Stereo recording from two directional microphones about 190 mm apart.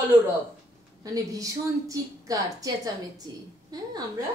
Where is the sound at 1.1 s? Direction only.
20° right (ahead or behind).